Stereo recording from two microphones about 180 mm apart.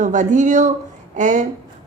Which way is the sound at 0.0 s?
45° right (ahead or behind).